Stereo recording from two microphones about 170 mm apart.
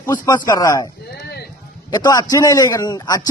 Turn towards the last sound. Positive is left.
turn(degrees=20)  # may be behind; listen again after turning